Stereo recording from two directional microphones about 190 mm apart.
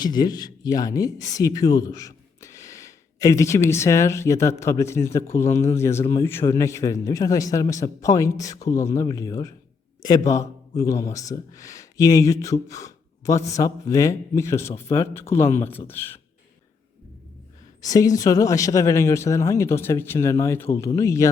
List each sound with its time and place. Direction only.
0.0 s a man's voice: 20° left (ahead or behind)
18.2 s speech: 20° left (ahead or behind)